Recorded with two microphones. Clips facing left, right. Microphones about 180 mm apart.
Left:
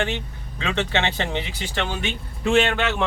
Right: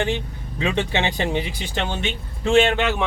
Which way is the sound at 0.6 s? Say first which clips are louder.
Right 2 dB; 15° right (ahead or behind).